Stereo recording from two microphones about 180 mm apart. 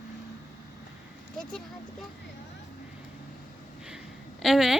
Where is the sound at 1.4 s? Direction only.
5° left (ahead or behind).